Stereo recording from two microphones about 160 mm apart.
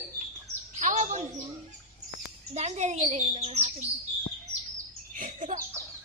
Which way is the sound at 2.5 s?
45° right (ahead or behind).